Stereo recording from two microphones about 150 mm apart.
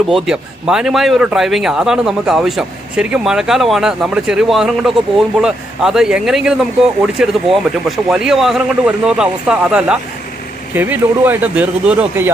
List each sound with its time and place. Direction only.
0.1 s speech: 5° right (ahead or behind)